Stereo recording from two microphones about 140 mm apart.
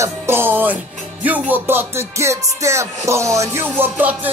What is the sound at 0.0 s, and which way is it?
Music, 15° right (ahead or behind).